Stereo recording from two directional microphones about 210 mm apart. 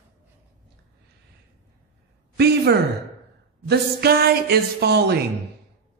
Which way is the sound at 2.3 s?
50° right (ahead or behind).